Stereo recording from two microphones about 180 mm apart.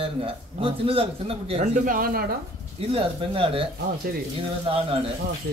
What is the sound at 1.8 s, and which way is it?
Speech, 50° right (ahead or behind).